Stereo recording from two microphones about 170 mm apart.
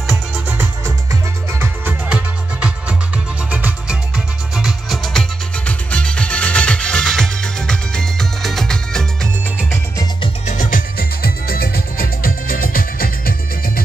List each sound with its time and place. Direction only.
1.6 s music: 10° right (ahead or behind)
10.4 s music: 50° left (ahead or behind)